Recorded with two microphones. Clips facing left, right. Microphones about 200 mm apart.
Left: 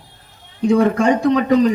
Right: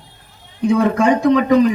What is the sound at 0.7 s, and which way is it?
Speech, 45° left (ahead or behind).